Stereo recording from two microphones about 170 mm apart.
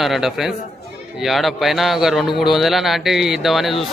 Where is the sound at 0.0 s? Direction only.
Centre (ahead or behind).